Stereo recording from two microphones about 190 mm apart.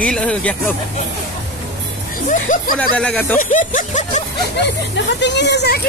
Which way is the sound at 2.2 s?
45° left (ahead or behind).